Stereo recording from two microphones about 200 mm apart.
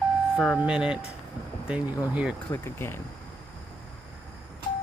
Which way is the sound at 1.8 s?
20° left (ahead or behind).